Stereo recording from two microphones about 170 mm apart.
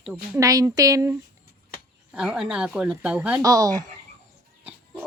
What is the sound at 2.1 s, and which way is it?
A woman's voice, 5° right (ahead or behind).